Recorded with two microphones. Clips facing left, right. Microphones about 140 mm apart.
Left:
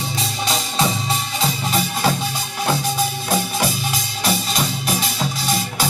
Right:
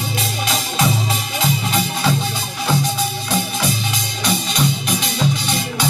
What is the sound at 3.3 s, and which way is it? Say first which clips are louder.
Music: even; 45° left (ahead or behind).